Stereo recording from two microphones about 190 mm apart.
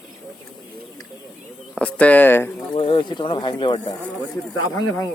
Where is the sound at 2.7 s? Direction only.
25° left (ahead or behind).